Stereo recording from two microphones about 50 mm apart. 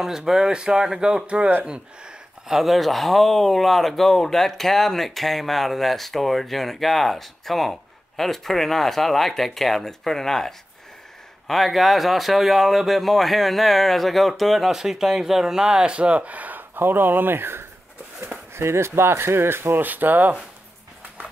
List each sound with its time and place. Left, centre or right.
0.0 s speech: centre
1.2 s speech: right
1.7 s speech: centre; by 20.3 s right